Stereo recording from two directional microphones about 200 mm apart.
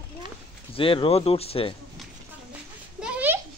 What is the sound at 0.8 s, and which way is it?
Speech, 25° left (ahead or behind).